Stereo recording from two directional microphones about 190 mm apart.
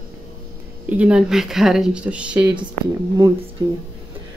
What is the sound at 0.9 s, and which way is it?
Speech, 5° right (ahead or behind).